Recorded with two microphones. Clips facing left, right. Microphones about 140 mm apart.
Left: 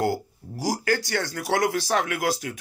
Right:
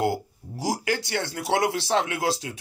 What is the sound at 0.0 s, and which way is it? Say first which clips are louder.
Speech: even; 25° right (ahead or behind).